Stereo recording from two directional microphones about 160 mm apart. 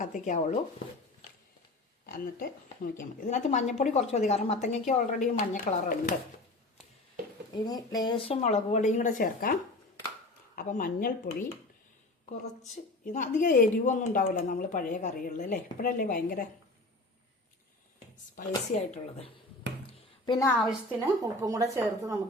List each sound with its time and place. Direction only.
0.0 s a woman's voice: 50° left (ahead or behind)
2.0 s a woman's voice: 65° left (ahead or behind)
7.5 s a woman's voice: 25° left (ahead or behind); by 11.4 s 60° left (ahead or behind)
13.1 s speech: 55° left (ahead or behind)
18.3 s a woman's voice: 45° left (ahead or behind)
19.9 s a sound: 30° left (ahead or behind)
21.0 s speech: 20° right (ahead or behind)